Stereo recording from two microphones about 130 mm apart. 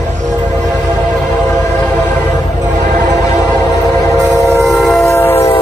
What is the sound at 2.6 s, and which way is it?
Train, 80° right.